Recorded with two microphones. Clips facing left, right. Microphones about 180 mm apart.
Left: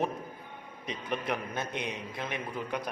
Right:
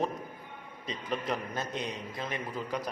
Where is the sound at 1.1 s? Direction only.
5° left (ahead or behind).